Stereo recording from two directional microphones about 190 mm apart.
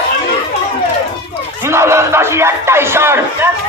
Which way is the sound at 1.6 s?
15° right (ahead or behind).